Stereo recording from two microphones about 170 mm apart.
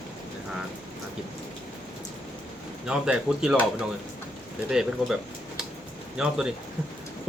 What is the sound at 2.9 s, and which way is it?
Speech, 5° right (ahead or behind).